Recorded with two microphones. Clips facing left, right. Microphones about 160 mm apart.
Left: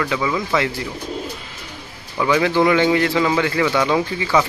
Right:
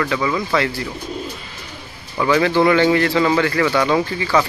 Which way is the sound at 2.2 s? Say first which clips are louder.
Right 1 dB; 10° left (ahead or behind).